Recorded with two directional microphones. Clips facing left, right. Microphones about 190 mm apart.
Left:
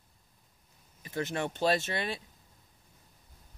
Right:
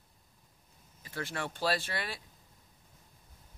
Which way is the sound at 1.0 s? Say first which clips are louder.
Left 5 dB; 20° left (ahead or behind).